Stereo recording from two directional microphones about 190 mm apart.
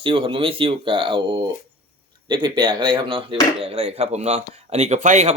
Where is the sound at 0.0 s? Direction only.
25° right (ahead or behind).